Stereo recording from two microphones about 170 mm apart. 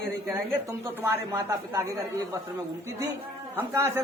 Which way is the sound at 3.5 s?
15° right (ahead or behind).